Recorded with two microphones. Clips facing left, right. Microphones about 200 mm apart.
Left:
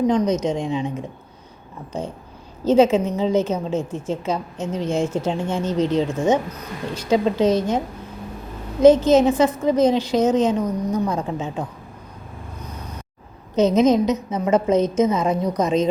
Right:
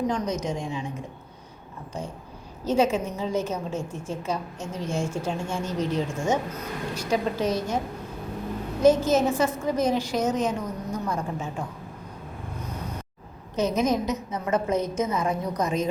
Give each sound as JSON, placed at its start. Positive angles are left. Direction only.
{"t": 0.1, "sound": "a woman's voice", "side_deg": 20}
{"t": 2.6, "sound": "a woman's voice", "side_deg": 20}
{"t": 8.8, "sound": "a woman's voice", "side_deg": 20}
{"t": 13.6, "sound": "a woman's voice", "side_deg": 20}